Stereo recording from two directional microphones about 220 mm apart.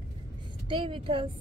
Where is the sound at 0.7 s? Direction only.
20° right (ahead or behind).